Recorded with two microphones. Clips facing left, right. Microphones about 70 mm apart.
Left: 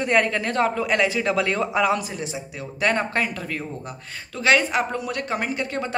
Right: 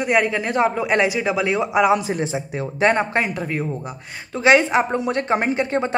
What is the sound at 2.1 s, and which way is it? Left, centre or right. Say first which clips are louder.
Speech: right 8 dB; right.